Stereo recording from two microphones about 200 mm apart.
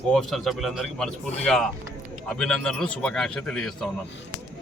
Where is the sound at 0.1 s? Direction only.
Centre (ahead or behind).